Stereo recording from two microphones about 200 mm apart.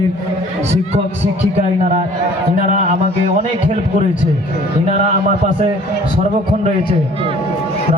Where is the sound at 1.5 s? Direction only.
30° right (ahead or behind).